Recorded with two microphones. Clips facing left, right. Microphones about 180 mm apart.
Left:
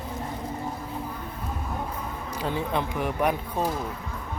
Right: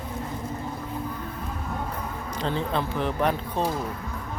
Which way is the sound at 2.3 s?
10° left (ahead or behind).